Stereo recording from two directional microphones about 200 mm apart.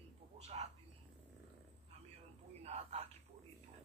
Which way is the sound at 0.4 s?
30° right (ahead or behind).